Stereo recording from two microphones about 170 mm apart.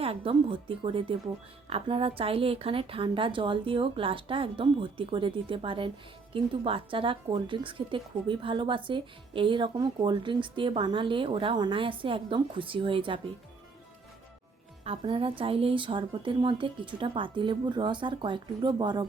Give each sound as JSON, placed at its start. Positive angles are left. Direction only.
{"t": 0.0, "sound": "a woman's voice", "side_deg": -35}
{"t": 14.8, "sound": "speech", "side_deg": -30}